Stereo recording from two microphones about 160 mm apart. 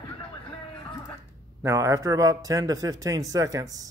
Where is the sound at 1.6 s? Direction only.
20° right (ahead or behind).